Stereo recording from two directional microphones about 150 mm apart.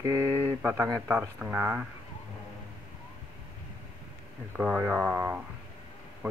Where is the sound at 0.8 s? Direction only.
15° right (ahead or behind).